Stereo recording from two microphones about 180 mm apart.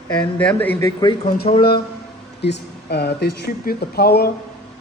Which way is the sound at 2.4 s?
70° left (ahead or behind).